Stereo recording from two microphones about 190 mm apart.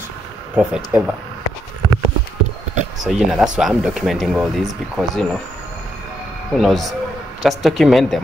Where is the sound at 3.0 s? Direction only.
5° right (ahead or behind).